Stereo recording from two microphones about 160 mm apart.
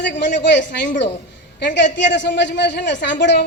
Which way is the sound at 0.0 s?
90° left.